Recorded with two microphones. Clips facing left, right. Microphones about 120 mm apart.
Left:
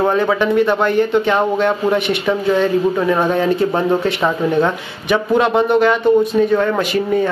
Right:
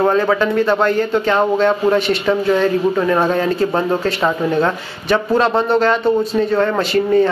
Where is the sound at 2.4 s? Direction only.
Centre (ahead or behind).